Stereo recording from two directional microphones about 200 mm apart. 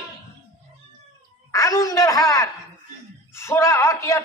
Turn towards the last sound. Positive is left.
turn(degrees=15)  # may be behind; listen again after turning